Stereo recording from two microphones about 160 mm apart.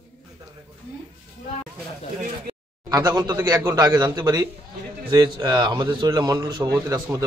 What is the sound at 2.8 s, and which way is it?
A man's voice, 20° right (ahead or behind).